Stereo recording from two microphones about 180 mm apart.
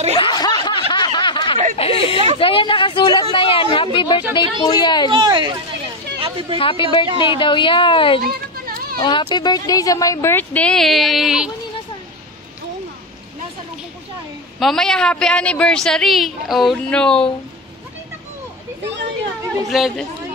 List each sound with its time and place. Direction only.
0.1 s snicker: 25° left (ahead or behind)
1.8 s a sound: 30° left (ahead or behind)
2.3 s speech: 30° left (ahead or behind)
5.1 s speech: 25° right (ahead or behind)
6.6 s speech: 30° left (ahead or behind)
8.2 s a sound: 55° right (ahead or behind)
9.0 s speech: 25° left (ahead or behind); by 11.5 s 5° right (ahead or behind)
14.6 s a woman's voice: centre (ahead or behind)
19.7 s a woman's voice: centre (ahead or behind)